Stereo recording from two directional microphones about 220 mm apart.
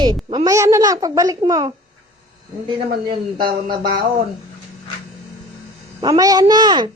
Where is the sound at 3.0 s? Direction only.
20° right (ahead or behind).